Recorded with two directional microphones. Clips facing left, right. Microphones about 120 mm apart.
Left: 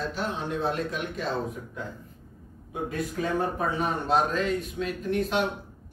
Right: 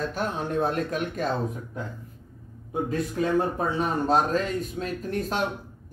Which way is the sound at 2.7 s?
30° right (ahead or behind).